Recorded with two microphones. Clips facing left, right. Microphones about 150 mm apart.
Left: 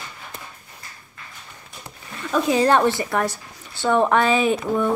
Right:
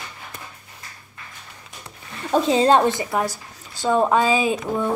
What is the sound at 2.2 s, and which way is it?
A woman's voice, 30° right (ahead or behind).